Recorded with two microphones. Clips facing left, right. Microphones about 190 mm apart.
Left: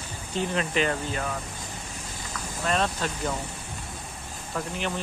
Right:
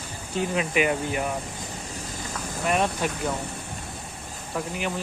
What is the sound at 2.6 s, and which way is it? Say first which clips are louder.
Speech: right 2 dB; 15° right (ahead or behind).